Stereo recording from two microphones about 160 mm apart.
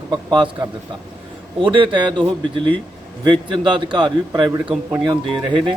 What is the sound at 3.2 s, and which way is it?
A man's voice, 30° right (ahead or behind).